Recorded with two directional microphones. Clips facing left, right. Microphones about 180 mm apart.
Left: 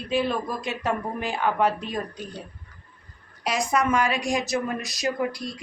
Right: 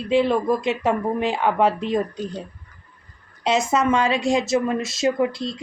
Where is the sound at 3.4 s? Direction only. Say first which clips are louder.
Right 4 dB; 25° right (ahead or behind).